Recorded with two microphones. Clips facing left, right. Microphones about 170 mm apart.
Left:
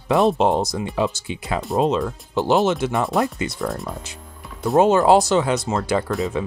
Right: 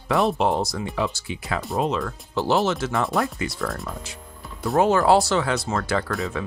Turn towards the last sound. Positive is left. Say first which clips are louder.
# left 4 dB
turn(degrees=20)  # may be behind; listen again after turning